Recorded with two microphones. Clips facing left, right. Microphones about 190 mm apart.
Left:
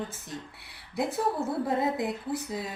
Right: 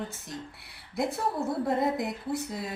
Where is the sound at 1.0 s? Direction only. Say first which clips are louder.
Left 1 dB; centre (ahead or behind).